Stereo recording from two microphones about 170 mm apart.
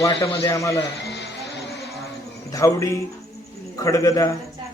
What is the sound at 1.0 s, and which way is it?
Music, 90° left.